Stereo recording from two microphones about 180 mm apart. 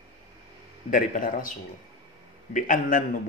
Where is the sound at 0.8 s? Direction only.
50° left (ahead or behind).